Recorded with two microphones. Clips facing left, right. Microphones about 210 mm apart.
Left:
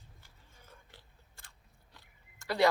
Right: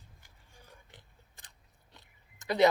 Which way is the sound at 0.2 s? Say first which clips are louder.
Right 2 dB; 15° right (ahead or behind).